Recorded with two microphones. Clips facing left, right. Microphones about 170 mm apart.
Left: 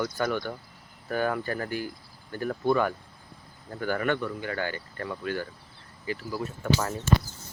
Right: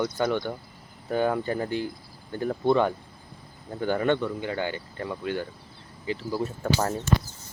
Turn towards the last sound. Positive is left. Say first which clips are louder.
# right 2 dB
turn(degrees=-35)  # may be behind; listen again after turning